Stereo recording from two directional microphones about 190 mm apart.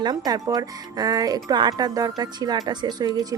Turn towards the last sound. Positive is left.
turn(degrees=-20)  # may be behind; listen again after turning